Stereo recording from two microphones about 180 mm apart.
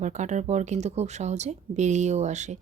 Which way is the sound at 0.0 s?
40° right (ahead or behind).